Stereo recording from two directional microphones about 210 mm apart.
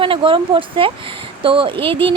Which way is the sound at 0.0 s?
25° right (ahead or behind).